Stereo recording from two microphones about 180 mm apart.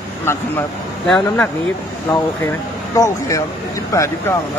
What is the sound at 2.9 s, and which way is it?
Speech, 15° left (ahead or behind).